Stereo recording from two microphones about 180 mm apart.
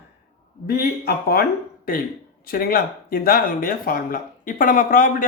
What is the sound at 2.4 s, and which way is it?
Speech, 55° left (ahead or behind).